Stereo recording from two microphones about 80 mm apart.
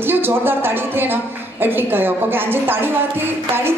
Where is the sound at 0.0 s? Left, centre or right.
Right.